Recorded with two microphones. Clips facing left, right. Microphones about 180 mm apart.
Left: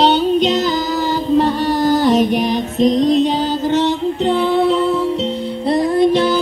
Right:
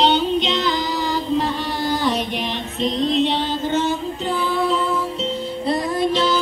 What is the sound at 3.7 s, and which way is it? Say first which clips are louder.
Female singing: left 6 dB; 70° left (ahead or behind).